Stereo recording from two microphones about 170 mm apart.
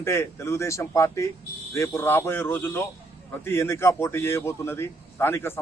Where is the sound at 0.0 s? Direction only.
15° left (ahead or behind).